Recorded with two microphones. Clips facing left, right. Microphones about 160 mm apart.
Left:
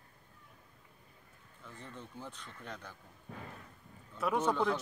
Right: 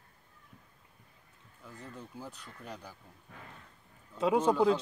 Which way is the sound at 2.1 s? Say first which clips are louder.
Right 2 dB; 10° right (ahead or behind).